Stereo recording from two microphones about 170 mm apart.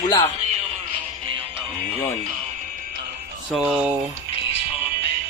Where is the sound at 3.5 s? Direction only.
5° right (ahead or behind).